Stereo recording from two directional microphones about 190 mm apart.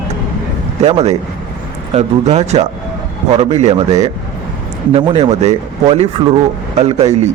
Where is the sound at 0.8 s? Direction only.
35° right (ahead or behind).